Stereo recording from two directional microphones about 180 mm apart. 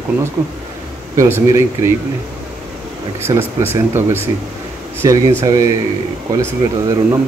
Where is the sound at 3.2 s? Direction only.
15° right (ahead or behind).